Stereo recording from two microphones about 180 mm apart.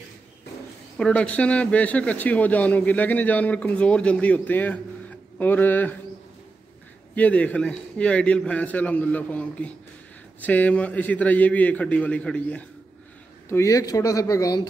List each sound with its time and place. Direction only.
0.9 s a man's voice: 5° left (ahead or behind)
7.2 s a man's voice: 10° left (ahead or behind)